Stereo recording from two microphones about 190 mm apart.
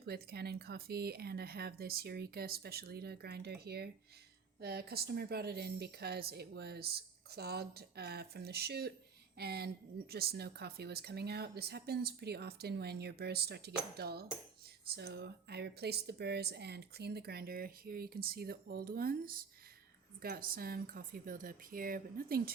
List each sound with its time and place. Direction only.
0.0 s speech: 55° right (ahead or behind)